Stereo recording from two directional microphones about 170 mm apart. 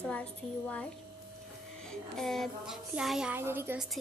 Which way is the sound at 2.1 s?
Centre (ahead or behind).